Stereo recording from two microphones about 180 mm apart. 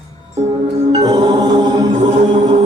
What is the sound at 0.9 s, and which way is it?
Music, 25° right (ahead or behind).